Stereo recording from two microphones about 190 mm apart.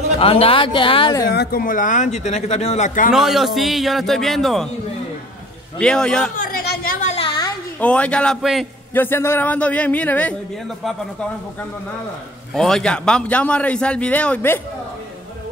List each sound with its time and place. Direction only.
0.2 s speech: 30° left (ahead or behind)
1.2 s speech: 55° left (ahead or behind); by 3.1 s 40° left (ahead or behind)
3.1 s a man's voice: centre (ahead or behind)
5.8 s a man's voice: 5° left (ahead or behind)
6.3 s a sound: 50° left (ahead or behind)
7.2 s a sound: 25° left (ahead or behind)
7.8 s a man's voice: 5° left (ahead or behind)
8.9 s a man's voice: 10° left (ahead or behind)
12.5 s a man's voice: centre (ahead or behind)